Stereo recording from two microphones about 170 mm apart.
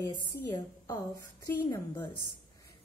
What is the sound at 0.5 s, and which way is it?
A woman's voice, 20° left (ahead or behind).